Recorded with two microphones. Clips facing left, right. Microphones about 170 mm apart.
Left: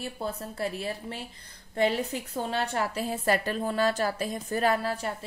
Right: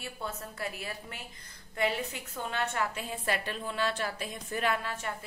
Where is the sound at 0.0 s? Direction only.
35° left (ahead or behind).